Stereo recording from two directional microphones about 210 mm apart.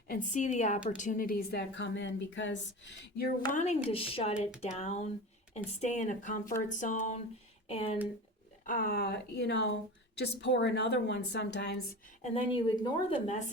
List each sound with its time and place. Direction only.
0.1 s speech: 35° left (ahead or behind); by 3.2 s 60° left (ahead or behind)
3.5 s a woman's voice: 35° left (ahead or behind)
8.6 s a woman's voice: 40° left (ahead or behind)
12.2 s a woman's voice: 25° left (ahead or behind)